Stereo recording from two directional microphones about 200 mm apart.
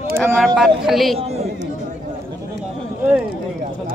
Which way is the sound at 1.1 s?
30° right (ahead or behind).